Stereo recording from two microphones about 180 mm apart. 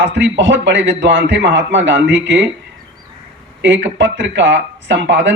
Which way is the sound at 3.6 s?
90° right.